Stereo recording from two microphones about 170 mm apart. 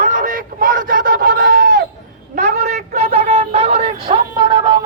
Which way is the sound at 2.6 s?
40° right (ahead or behind).